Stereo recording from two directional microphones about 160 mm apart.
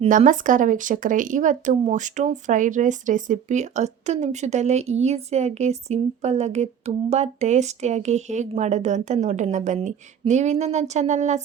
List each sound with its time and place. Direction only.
0.1 s speech: 55° right (ahead or behind)